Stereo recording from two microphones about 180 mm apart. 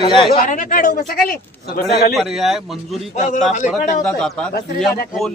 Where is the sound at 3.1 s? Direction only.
45° left (ahead or behind).